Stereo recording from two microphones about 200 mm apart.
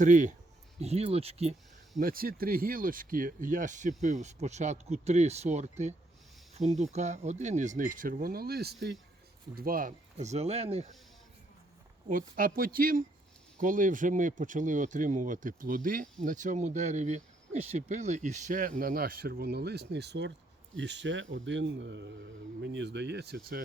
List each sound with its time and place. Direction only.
0.0 s speech: 40° right (ahead or behind)
2.0 s speech: 45° right (ahead or behind); by 10.8 s 30° right (ahead or behind)
12.0 s speech: 45° right (ahead or behind)